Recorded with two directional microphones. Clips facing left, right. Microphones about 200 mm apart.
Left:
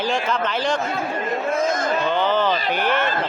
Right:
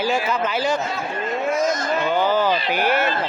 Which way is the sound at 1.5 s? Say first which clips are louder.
Right 1 dB; 55° left (ahead or behind).